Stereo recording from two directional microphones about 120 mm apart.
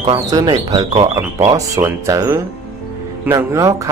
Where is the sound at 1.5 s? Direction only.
25° right (ahead or behind).